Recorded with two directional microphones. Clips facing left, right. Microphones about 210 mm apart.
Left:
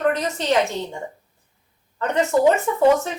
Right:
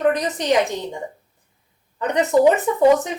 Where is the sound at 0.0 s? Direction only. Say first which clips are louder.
Right 2 dB; 15° right (ahead or behind).